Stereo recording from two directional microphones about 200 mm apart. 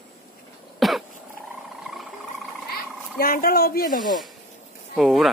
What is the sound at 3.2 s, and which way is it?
Speech, 45° left (ahead or behind).